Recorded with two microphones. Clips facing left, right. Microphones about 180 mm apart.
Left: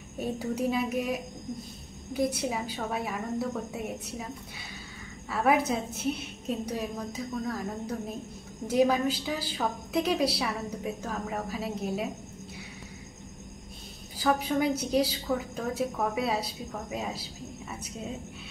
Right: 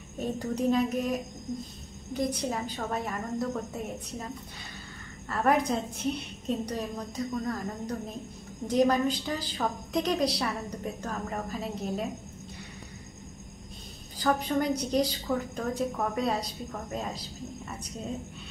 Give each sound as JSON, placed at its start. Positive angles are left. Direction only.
{"t": 0.2, "sound": "a woman's voice", "side_deg": 10}
{"t": 5.3, "sound": "a woman's voice", "side_deg": 5}
{"t": 14.1, "sound": "a woman's voice", "side_deg": 5}